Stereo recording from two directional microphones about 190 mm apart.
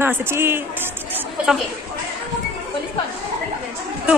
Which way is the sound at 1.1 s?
10° right (ahead or behind).